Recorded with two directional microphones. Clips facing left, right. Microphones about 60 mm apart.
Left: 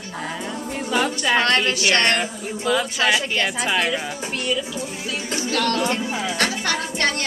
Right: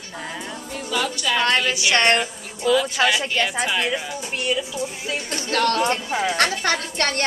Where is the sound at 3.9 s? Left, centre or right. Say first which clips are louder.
Left 1 dB; centre.